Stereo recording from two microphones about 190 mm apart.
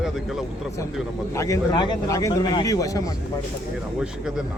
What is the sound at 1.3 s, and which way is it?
Speech, 15° left (ahead or behind).